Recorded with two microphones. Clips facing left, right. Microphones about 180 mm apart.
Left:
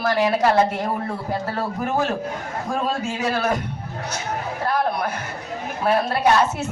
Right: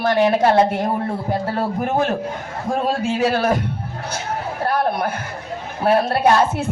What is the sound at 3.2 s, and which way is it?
Speech, 30° right (ahead or behind).